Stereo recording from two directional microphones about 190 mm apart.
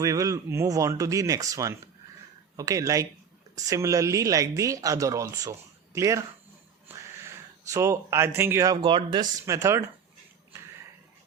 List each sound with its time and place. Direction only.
0.0 s speech: 15° right (ahead or behind)